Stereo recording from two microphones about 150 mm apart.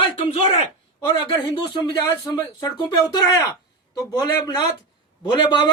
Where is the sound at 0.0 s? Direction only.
45° left (ahead or behind).